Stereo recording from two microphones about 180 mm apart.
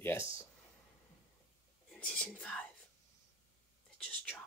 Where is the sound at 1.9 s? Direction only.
5° left (ahead or behind).